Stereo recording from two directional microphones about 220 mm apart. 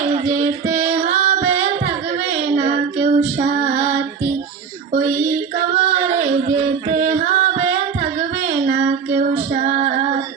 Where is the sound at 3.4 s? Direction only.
30° right (ahead or behind).